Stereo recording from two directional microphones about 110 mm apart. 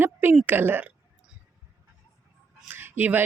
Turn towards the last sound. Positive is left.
turn(degrees=-20)  # may be behind; listen again after turning